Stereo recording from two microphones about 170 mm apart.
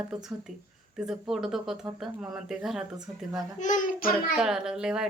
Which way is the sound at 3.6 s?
50° left (ahead or behind).